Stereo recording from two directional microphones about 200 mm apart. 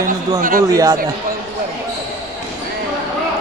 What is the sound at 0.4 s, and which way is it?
Speech, 40° right (ahead or behind).